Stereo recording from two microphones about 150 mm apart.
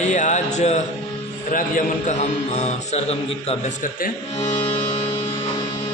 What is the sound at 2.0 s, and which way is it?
A man's voice, 50° left (ahead or behind).